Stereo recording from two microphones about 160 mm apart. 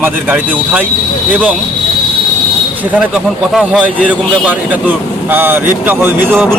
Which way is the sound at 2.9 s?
5° right (ahead or behind).